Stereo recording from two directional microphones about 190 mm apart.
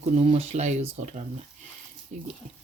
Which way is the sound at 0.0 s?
35° right (ahead or behind).